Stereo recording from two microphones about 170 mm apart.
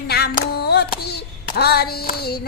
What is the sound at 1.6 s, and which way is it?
Clapping, 65° left (ahead or behind).